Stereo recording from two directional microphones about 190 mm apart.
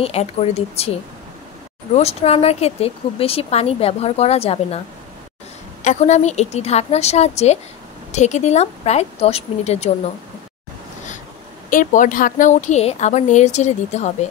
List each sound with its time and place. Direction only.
0.0 s a woman's voice: 35° left (ahead or behind)
2.0 s a woman's voice: 35° left (ahead or behind)
5.9 s a woman's voice: 40° left (ahead or behind)
11.7 s a woman's voice: 45° left (ahead or behind)